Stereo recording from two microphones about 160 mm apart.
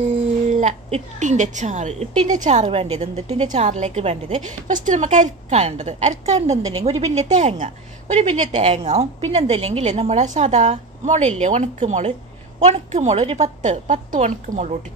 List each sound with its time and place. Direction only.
0.5 s a woman's voice: 45° right (ahead or behind)